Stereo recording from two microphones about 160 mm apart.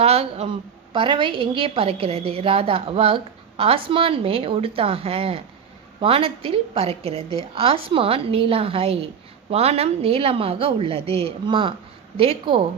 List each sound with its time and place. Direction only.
0.0 s a woman's voice: 40° right (ahead or behind)